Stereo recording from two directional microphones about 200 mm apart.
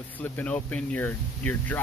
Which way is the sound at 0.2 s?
10° left (ahead or behind).